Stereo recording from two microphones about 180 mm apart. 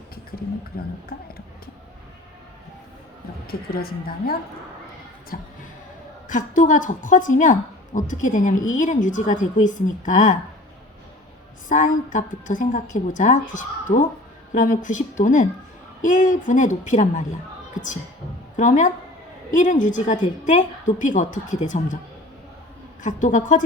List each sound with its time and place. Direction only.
0.3 s speech: 15° left (ahead or behind)
1.1 s a woman's voice: 60° left (ahead or behind)
3.4 s a woman's voice: 55° left (ahead or behind)
11.7 s a woman's voice: 45° left (ahead or behind)
18.5 s a woman's voice: 45° left (ahead or behind)
23.0 s a woman's voice: 45° left (ahead or behind)